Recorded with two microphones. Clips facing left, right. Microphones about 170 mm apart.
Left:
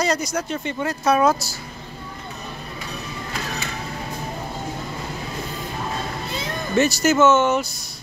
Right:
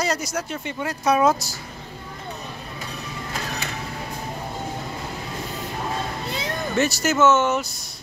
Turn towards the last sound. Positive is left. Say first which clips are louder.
# left 2 dB
turn(degrees=0)  # may be behind; listen again after turning